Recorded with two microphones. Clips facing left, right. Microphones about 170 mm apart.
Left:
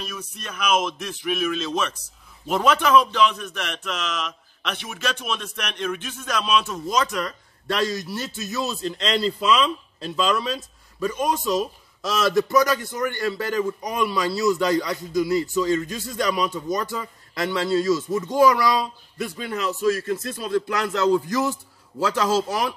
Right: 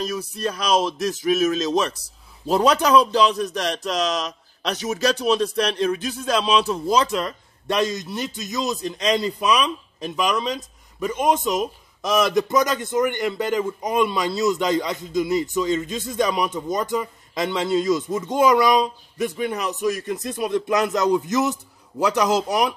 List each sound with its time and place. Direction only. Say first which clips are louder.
0.0 s speech: right 10 dB; 35° right (ahead or behind); by 22.8 s 20° right (ahead or behind)